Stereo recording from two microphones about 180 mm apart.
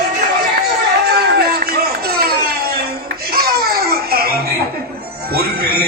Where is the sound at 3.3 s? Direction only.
60° right (ahead or behind).